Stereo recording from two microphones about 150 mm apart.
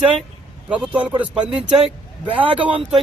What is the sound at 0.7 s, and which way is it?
Speech, 10° right (ahead or behind).